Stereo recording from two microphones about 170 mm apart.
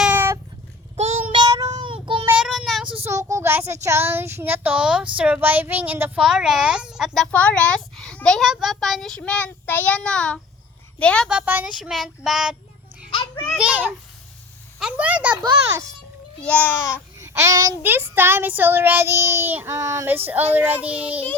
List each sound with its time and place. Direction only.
0.0 s cat: 10° right (ahead or behind)
0.9 s child singing: 40° right (ahead or behind)
2.2 s child singing: 5° right (ahead or behind)
3.0 s child singing: 15° right (ahead or behind)
5.1 s speech: 5° right (ahead or behind)
11.3 s speech: 10° right (ahead or behind)
13.1 s child singing: 30° left (ahead or behind)
13.6 s child singing: 10° right (ahead or behind)
16.4 s speech: 10° left (ahead or behind)
17.2 s child singing: 15° right (ahead or behind)